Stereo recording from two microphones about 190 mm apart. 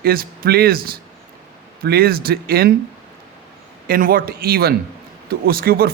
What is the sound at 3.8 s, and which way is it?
Speech, 50° right (ahead or behind).